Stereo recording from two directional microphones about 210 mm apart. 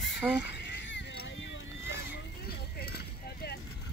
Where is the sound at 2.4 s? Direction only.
50° left (ahead or behind).